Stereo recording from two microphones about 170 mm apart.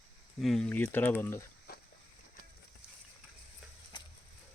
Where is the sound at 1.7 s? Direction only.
65° left (ahead or behind).